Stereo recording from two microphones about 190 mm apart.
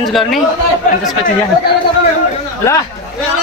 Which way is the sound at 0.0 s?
Centre (ahead or behind).